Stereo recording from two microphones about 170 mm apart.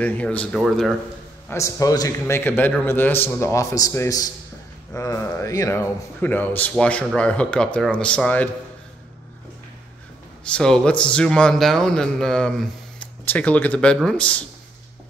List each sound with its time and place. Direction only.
0.0 s a man's voice: 10° left (ahead or behind)
1.5 s a man's voice: 20° left (ahead or behind)
10.5 s a man's voice: 5° left (ahead or behind)